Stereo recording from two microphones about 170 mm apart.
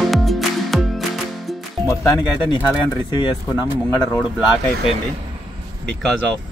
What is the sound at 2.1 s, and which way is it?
Speech, 25° left (ahead or behind).